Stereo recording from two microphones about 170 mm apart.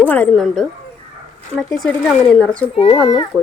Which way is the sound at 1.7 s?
Centre (ahead or behind).